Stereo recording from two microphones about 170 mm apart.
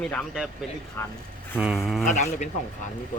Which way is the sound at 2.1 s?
45° left (ahead or behind).